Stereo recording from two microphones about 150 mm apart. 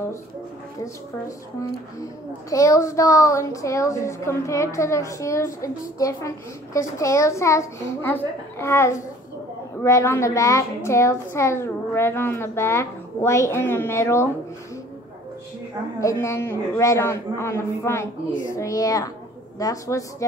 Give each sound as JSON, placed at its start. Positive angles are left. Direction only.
{"t": 1.2, "sound": "a woman's voice", "side_deg": 20}
{"t": 16.0, "sound": "a woman's voice", "side_deg": 20}